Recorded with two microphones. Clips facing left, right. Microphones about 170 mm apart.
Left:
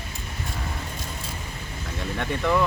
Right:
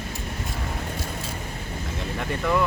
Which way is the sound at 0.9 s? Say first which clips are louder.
Right 4 dB; 65° right (ahead or behind).